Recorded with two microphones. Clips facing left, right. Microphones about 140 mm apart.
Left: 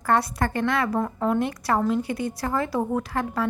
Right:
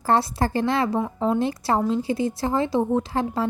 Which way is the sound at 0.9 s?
5° right (ahead or behind).